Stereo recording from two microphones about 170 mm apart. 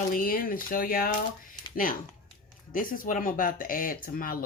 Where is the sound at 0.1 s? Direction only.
55° left (ahead or behind).